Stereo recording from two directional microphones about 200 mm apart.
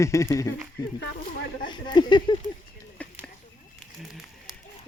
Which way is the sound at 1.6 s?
20° left (ahead or behind).